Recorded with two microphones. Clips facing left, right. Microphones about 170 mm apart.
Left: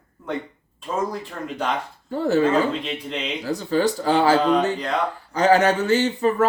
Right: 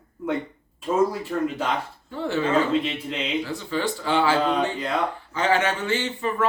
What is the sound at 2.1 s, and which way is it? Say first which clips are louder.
Speech: left 4 dB; 40° left (ahead or behind).